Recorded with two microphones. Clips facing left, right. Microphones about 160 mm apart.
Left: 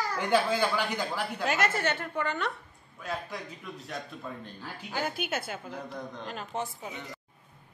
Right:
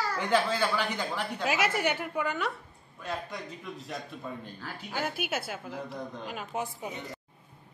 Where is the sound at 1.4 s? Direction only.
10° right (ahead or behind).